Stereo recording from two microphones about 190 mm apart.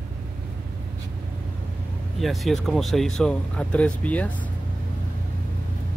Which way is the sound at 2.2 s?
Centre (ahead or behind).